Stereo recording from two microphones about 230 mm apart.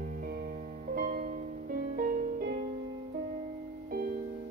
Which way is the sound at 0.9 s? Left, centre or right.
Right.